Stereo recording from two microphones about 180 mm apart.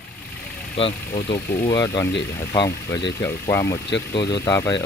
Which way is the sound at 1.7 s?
20° left (ahead or behind).